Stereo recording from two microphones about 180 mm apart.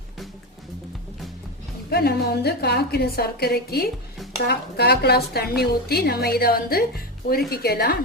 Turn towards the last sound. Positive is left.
turn(degrees=60)  # may be behind; listen again after turning